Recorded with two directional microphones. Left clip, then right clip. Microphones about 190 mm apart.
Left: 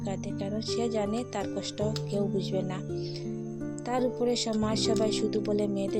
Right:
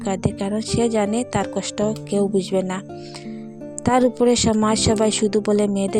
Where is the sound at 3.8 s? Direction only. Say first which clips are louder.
Right 12 dB; 50° right (ahead or behind).